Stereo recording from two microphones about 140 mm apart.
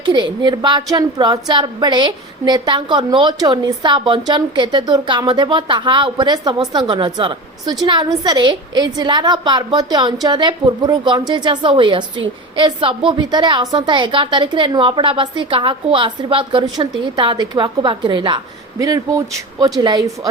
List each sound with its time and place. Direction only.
0.0 s a woman's voice: 30° right (ahead or behind)